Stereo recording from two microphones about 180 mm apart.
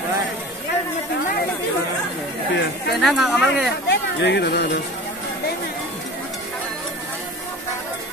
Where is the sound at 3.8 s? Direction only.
70° left (ahead or behind).